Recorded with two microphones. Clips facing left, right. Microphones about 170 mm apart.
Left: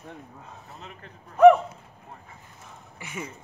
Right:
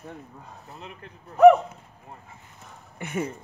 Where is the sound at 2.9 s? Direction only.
55° right (ahead or behind).